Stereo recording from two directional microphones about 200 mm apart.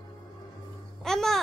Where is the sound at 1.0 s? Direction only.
Centre (ahead or behind).